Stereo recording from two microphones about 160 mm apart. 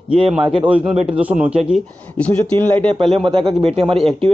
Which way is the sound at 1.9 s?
10° left (ahead or behind).